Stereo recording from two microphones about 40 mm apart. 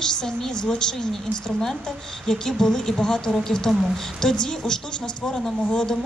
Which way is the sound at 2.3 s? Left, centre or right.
Centre.